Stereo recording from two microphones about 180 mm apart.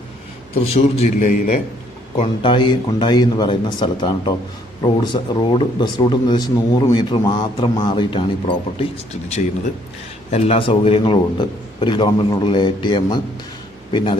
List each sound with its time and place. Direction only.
0.6 s a man's voice: 35° left (ahead or behind)
2.1 s a man's voice: 30° left (ahead or behind)
10.3 s a man's voice: 35° left (ahead or behind)